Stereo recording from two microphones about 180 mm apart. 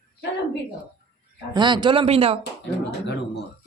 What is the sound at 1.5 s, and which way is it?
Speech, 25° right (ahead or behind).